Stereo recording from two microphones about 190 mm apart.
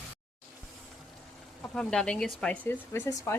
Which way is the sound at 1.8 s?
5° left (ahead or behind).